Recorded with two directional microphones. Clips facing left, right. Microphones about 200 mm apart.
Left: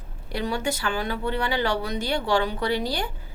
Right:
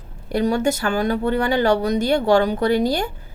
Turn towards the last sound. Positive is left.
turn(degrees=-45)  # may be behind; listen again after turning